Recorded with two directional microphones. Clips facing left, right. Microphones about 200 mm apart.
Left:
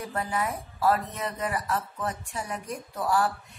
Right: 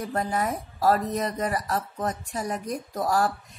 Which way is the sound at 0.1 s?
40° right (ahead or behind).